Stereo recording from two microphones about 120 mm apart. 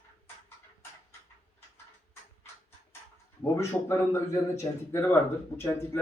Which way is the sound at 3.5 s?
25° left (ahead or behind).